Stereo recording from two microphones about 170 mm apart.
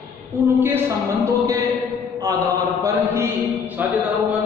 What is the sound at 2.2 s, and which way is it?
Mantra, 20° right (ahead or behind).